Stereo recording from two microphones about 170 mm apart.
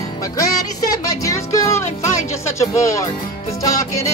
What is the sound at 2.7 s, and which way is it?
Speech, 20° left (ahead or behind).